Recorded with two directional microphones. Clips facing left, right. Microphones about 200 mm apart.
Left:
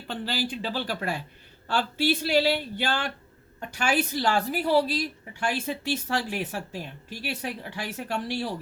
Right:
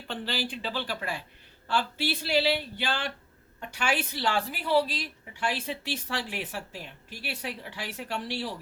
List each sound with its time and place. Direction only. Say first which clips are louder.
0.1 s a woman's voice: left 3 dB; 45° left (ahead or behind)